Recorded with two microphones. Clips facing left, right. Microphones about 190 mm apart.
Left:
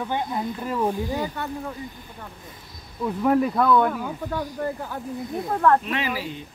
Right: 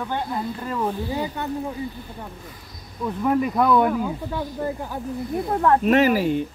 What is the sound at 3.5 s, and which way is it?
Speech, 20° right (ahead or behind).